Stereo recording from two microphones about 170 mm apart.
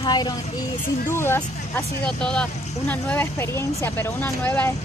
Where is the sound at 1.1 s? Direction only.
15° left (ahead or behind).